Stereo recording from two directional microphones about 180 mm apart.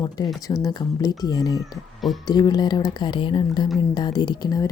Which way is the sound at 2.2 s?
20° left (ahead or behind).